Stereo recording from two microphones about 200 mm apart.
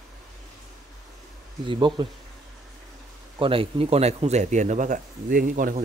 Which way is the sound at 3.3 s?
25° right (ahead or behind).